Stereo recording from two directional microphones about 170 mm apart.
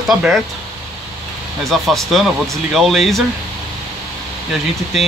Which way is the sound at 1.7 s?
Centre (ahead or behind).